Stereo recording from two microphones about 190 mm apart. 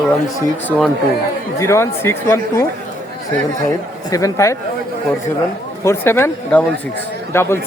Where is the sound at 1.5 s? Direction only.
15° left (ahead or behind).